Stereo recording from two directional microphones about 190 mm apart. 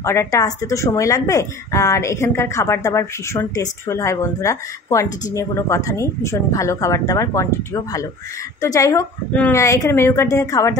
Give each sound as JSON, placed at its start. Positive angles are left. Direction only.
{"t": 0.0, "sound": "speech", "side_deg": 15}